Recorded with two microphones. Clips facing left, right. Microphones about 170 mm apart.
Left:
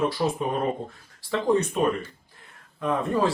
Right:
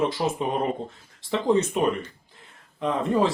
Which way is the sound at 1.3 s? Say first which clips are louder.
Right 1 dB; 20° right (ahead or behind).